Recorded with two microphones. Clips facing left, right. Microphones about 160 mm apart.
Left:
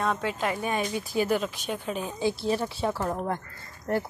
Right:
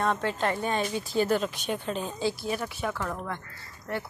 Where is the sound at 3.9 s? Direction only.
45° left (ahead or behind).